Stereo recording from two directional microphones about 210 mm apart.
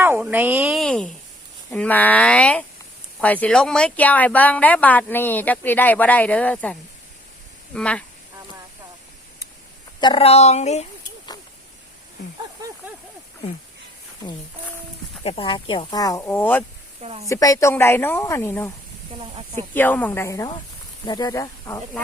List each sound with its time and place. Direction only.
0.0 s a woman's voice: 10° right (ahead or behind)
10.0 s speech: 25° left (ahead or behind)
15.2 s speech: 25° left (ahead or behind); by 16.6 s 10° left (ahead or behind)
17.0 s speech: 30° right (ahead or behind)
17.2 s speech: 15° left (ahead or behind)
19.2 s speech: 25° right (ahead or behind)
19.7 s speech: 10° left (ahead or behind)